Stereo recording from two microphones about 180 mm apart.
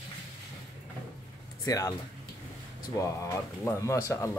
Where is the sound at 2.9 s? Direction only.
15° left (ahead or behind).